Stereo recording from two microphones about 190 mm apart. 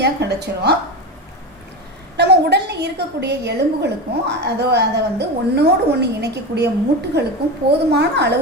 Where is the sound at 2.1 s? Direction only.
60° right (ahead or behind).